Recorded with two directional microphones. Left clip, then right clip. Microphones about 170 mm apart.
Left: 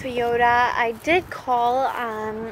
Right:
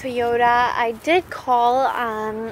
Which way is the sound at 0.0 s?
20° right (ahead or behind).